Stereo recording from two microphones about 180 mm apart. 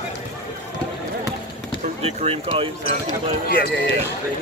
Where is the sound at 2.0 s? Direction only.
35° right (ahead or behind).